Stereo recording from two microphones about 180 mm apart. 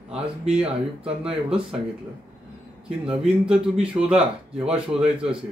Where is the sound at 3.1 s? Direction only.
5° right (ahead or behind).